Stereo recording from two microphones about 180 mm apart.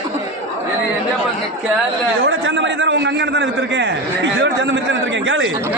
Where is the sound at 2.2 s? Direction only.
90° right.